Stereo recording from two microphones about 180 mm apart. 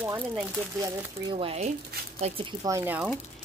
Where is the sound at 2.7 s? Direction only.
15° right (ahead or behind).